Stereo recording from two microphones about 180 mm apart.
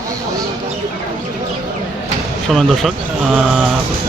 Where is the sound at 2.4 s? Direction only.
Centre (ahead or behind).